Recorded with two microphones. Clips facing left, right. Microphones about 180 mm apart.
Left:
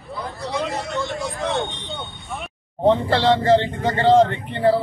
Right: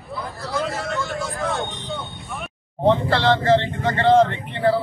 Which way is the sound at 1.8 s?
Centre (ahead or behind).